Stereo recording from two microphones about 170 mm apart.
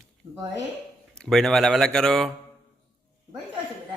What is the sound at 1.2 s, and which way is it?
Speech, 5° left (ahead or behind).